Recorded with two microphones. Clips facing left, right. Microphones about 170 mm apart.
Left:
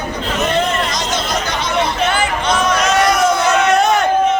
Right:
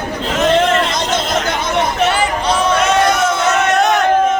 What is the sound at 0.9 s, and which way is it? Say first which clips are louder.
Chatter: right 2 dB; 50° right (ahead or behind).